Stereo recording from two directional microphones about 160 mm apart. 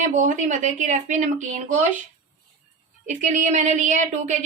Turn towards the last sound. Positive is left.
turn(degrees=-50)  # may be behind; listen again after turning